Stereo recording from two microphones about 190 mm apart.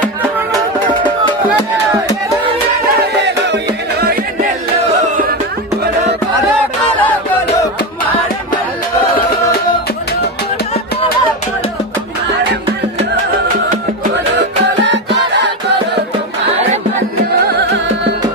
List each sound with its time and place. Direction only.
3.2 s music: 65° right (ahead or behind)
7.0 s music: 10° left (ahead or behind)
14.6 s music: 65° right (ahead or behind)